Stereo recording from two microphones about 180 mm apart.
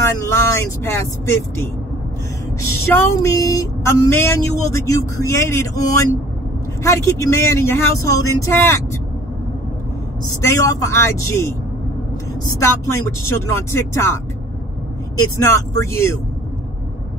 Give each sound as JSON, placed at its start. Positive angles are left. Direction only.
{"t": 0.0, "sound": "speech", "side_deg": 15}
{"t": 2.7, "sound": "speech", "side_deg": 15}
{"t": 10.4, "sound": "speech", "side_deg": 15}
{"t": 12.5, "sound": "speech", "side_deg": 15}